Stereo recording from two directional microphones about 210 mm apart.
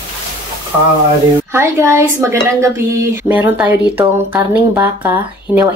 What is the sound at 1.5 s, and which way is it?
Speech, 15° right (ahead or behind).